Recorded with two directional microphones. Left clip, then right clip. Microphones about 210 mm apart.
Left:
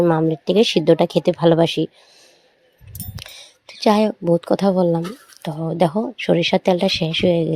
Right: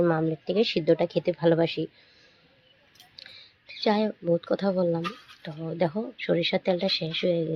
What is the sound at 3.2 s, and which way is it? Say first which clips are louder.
Speech: left 7 dB; 35° left (ahead or behind).